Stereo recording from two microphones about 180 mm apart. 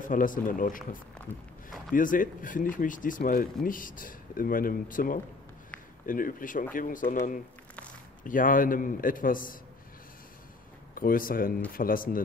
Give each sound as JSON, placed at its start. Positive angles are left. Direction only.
{"t": 0.0, "sound": "speech", "side_deg": 50}
{"t": 2.0, "sound": "speech", "side_deg": 50}
{"t": 11.0, "sound": "speech", "side_deg": 50}